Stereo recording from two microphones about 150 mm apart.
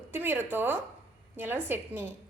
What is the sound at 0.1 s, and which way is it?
A woman's voice, 15° right (ahead or behind).